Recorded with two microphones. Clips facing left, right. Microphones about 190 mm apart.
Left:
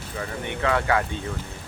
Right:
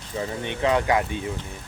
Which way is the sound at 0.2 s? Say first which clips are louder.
Right 2 dB; 20° right (ahead or behind).